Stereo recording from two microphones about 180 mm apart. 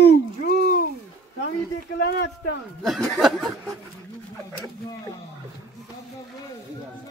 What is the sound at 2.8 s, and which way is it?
Speech, centre (ahead or behind).